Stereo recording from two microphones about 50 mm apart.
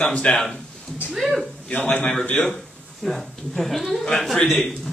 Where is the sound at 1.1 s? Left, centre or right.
Centre.